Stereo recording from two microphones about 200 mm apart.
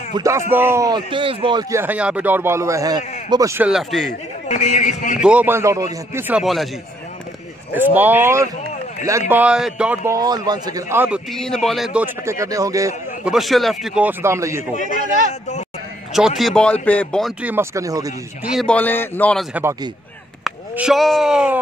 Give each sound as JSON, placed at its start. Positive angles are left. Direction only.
{"t": 0.1, "sound": "a man's voice", "side_deg": -15}
{"t": 4.5, "sound": "speech", "side_deg": 35}
{"t": 5.2, "sound": "a man's voice", "side_deg": -5}
{"t": 7.7, "sound": "a man's voice", "side_deg": -10}
{"t": 10.1, "sound": "a man's voice", "side_deg": -20}
{"t": 11.3, "sound": "a man's voice", "side_deg": 5}
{"t": 13.2, "sound": "a man's voice", "side_deg": 0}
{"t": 14.8, "sound": "speech", "side_deg": 40}
{"t": 16.1, "sound": "a man's voice", "side_deg": 0}
{"t": 17.4, "sound": "a man's voice", "side_deg": -10}
{"t": 18.4, "sound": "a man's voice", "side_deg": 0}
{"t": 20.4, "sound": "speech", "side_deg": -5}